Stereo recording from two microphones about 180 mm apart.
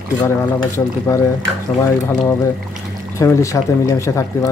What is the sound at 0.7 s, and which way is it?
Speech, 15° left (ahead or behind).